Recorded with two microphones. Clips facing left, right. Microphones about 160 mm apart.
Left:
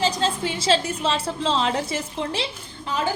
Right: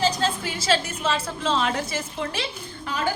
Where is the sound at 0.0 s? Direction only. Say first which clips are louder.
Left 1 dB; 25° left (ahead or behind).